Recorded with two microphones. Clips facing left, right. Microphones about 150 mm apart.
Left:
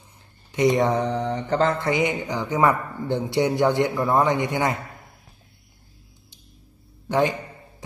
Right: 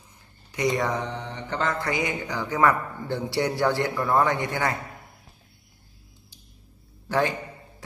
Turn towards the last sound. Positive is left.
turn(degrees=20)  # may be behind; listen again after turning